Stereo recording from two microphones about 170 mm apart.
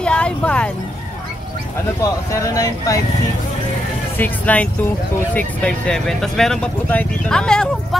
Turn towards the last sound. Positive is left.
turn(degrees=5)  # may be behind; listen again after turning